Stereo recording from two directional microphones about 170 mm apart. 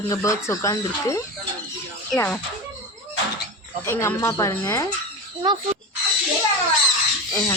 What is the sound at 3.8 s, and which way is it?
A woman's voice, 15° left (ahead or behind).